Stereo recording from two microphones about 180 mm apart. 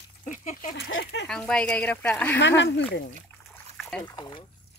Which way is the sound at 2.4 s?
80° left.